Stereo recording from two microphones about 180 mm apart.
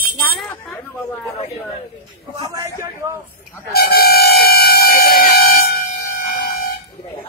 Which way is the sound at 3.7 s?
60° left (ahead or behind).